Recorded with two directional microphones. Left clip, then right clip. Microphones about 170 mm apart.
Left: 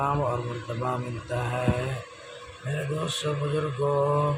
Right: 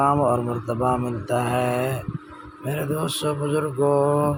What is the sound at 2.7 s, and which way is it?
Speech, 35° right (ahead or behind).